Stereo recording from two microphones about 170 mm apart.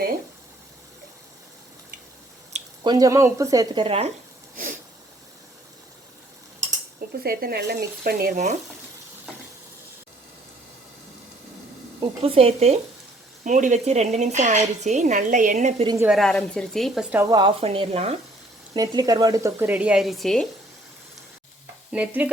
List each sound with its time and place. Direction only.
2.8 s speech: 20° right (ahead or behind)
7.1 s speech: 65° right (ahead or behind)
11.9 s frying: 35° right (ahead or behind)
13.4 s a woman's voice: 45° right (ahead or behind)
16.0 s a woman's voice: centre (ahead or behind)
17.3 s frying: 30° right (ahead or behind)
18.7 s a woman's voice: 25° right (ahead or behind); by 20.5 s centre (ahead or behind)
21.9 s a woman's voice: 10° right (ahead or behind)